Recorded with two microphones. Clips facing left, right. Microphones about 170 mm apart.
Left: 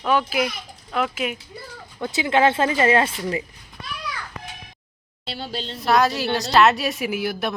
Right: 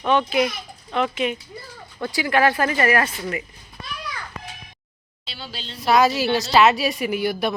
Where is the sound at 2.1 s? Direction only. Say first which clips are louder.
Left 1 dB; 20° left (ahead or behind).